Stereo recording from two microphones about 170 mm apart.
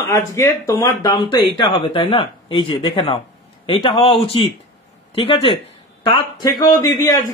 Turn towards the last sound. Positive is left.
turn(degrees=20)  # may be behind; listen again after turning